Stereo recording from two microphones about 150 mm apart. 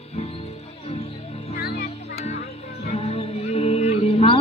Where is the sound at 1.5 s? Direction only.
90° left.